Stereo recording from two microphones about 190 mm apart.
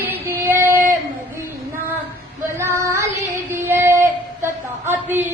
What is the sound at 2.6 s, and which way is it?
Child singing, 15° right (ahead or behind).